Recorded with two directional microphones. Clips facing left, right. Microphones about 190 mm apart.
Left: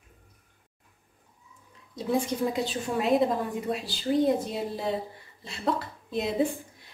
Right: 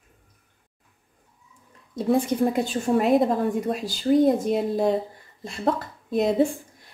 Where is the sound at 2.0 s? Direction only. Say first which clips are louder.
Right 6 dB; 55° right (ahead or behind).